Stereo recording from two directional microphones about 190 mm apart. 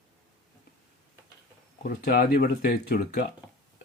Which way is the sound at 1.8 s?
45° left (ahead or behind).